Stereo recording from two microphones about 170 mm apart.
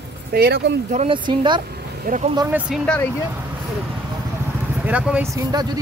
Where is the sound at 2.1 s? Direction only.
40° right (ahead or behind).